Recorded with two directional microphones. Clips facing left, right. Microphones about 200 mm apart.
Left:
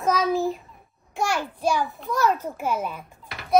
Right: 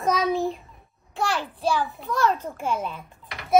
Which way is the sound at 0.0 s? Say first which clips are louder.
Left 1 dB; centre (ahead or behind).